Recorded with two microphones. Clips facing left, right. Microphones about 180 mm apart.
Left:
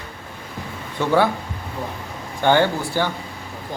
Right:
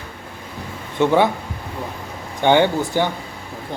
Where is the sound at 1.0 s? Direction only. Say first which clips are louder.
Right 2 dB; 20° right (ahead or behind).